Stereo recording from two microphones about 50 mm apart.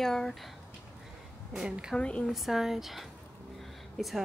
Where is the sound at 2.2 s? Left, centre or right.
Centre.